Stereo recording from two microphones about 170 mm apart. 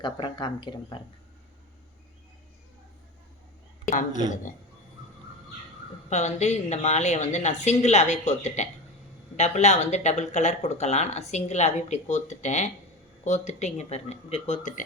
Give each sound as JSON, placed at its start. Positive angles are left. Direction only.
{"t": 0.0, "sound": "speech", "side_deg": 25}
{"t": 3.8, "sound": "speech", "side_deg": 50}
{"t": 6.1, "sound": "a woman's voice", "side_deg": 40}